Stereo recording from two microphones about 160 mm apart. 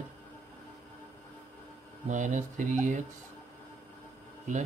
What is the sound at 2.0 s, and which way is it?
Speech, 50° right (ahead or behind).